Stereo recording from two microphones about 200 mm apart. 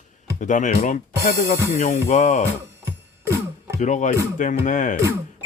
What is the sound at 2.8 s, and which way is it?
Music, 15° right (ahead or behind).